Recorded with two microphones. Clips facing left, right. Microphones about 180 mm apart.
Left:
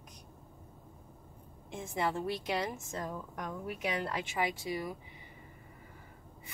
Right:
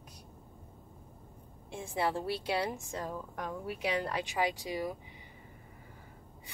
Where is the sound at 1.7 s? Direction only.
10° right (ahead or behind).